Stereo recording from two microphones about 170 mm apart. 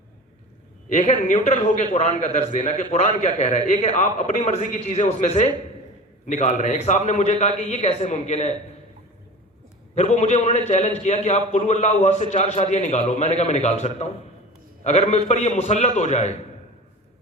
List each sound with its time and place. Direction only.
0.9 s a man's voice: 45° left (ahead or behind)
9.9 s a man's voice: 40° left (ahead or behind)